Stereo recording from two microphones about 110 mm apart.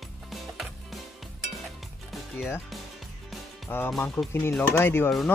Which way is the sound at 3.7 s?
15° left (ahead or behind).